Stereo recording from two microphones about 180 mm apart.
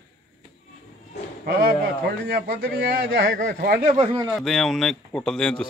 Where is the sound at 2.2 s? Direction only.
60° right (ahead or behind).